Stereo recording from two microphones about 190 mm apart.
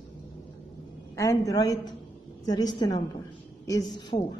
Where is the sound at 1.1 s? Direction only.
15° left (ahead or behind).